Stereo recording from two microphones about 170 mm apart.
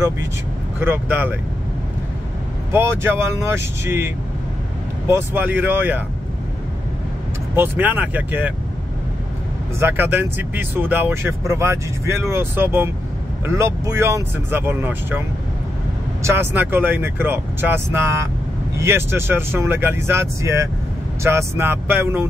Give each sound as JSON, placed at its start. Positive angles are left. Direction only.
{"t": 0.7, "sound": "speech", "side_deg": -10}
{"t": 2.7, "sound": "speech", "side_deg": -15}
{"t": 7.5, "sound": "speech", "side_deg": -10}
{"t": 9.8, "sound": "speech", "side_deg": -10}